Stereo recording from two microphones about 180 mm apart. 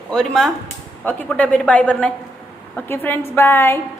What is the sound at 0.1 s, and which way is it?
A woman's voice, 5° left (ahead or behind).